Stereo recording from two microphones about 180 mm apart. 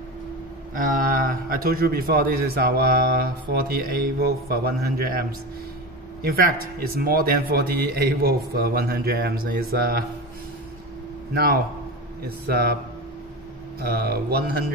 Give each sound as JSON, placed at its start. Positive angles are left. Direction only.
{"t": 0.7, "sound": "a man's voice", "side_deg": -50}
{"t": 6.2, "sound": "a man's voice", "side_deg": -55}
{"t": 11.3, "sound": "a man's voice", "side_deg": -55}
{"t": 13.7, "sound": "a man's voice", "side_deg": -60}